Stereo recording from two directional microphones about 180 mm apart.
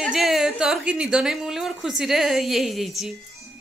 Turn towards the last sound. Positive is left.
turn(degrees=0)  # may be behind; listen again after turning